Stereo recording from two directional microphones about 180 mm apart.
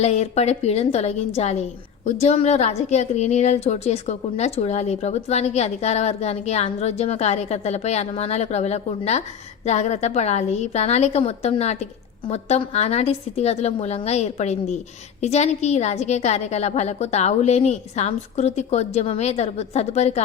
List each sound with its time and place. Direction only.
0.0 s a woman's voice: 35° left (ahead or behind)